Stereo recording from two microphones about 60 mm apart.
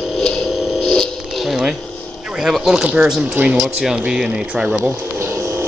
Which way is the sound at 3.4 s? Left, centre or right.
Right.